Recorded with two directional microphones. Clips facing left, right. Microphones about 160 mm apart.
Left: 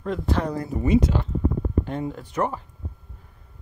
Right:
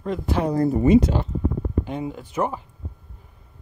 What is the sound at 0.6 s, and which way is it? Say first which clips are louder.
Speech: right 7 dB; 50° right (ahead or behind).